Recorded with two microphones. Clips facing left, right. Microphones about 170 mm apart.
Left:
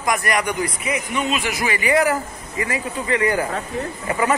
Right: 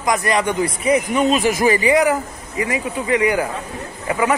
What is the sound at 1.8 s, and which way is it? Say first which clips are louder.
Speech: right 3 dB; 20° right (ahead or behind).